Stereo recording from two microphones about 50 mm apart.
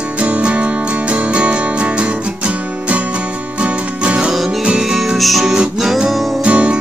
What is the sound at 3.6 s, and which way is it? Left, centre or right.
Music, right.